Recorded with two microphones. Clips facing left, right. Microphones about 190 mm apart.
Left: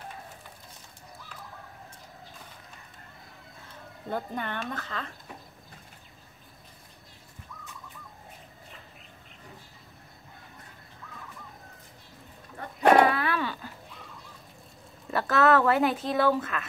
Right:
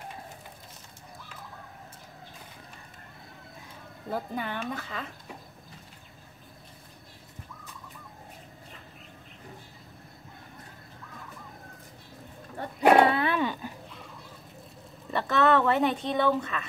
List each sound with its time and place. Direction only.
4.1 s speech: 5° right (ahead or behind)
13.0 s cat: 25° right (ahead or behind)
15.0 s speech: centre (ahead or behind)